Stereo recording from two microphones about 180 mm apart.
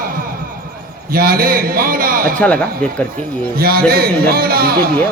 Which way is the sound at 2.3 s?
5° left (ahead or behind).